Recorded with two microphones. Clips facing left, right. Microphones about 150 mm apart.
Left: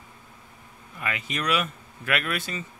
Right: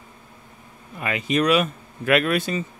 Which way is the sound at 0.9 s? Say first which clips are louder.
Right 9 dB; 25° right (ahead or behind).